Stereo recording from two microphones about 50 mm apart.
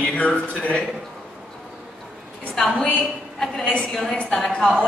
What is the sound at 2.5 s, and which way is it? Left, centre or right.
A woman's voice, centre.